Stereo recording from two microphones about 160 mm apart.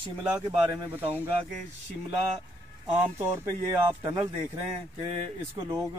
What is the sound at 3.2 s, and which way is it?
Speech, 15° right (ahead or behind).